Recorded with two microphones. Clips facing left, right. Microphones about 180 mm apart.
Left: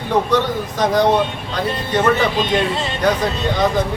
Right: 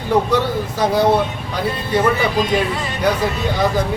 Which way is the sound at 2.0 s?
25° left (ahead or behind).